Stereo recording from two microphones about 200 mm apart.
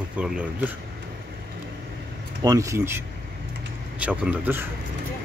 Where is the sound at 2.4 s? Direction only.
15° right (ahead or behind).